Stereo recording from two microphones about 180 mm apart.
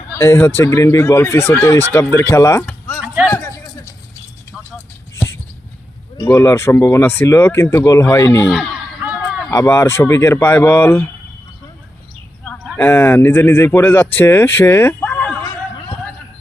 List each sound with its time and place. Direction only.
0.1 s speech: 15° left (ahead or behind)
6.1 s speech: 20° left (ahead or behind)
8.4 s a sound: 5° right (ahead or behind)
9.5 s speech: 15° left (ahead or behind)
12.7 s speech: 10° left (ahead or behind)